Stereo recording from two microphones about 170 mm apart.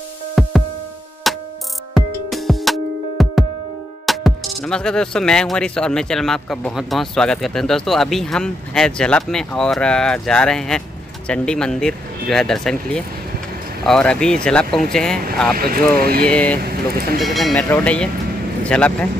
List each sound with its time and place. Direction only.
0.4 s music: centre (ahead or behind)
4.0 s speech: centre (ahead or behind)
15.5 s speech: 60° right (ahead or behind)
16.3 s speech: 10° left (ahead or behind)
16.6 s speech: 60° right (ahead or behind)
17.2 s speech: centre (ahead or behind)